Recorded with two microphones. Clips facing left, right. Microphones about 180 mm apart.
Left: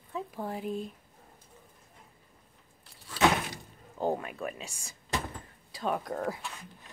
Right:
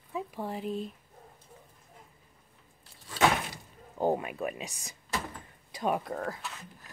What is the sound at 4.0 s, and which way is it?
Speech, 15° right (ahead or behind).